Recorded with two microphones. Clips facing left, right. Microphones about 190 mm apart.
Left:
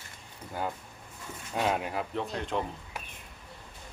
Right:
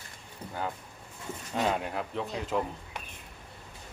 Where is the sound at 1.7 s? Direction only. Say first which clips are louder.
Left 2 dB; 5° left (ahead or behind).